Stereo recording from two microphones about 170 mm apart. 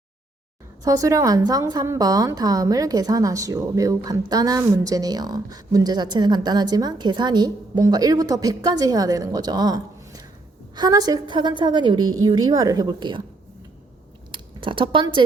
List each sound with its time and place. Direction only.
0.9 s a woman's voice: 20° right (ahead or behind)
14.3 s speech: 30° right (ahead or behind)